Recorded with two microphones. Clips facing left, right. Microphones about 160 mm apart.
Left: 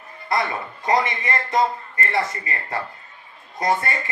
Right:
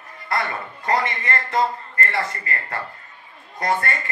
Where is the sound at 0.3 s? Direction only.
20° left (ahead or behind).